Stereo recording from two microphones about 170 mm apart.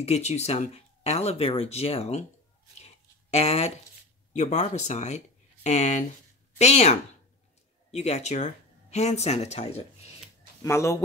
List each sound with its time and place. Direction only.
0.0 s speech: 40° left (ahead or behind)
2.8 s a sound: 35° left (ahead or behind)
4.3 s speech: 40° left (ahead or behind)
10.6 s speech: 15° left (ahead or behind)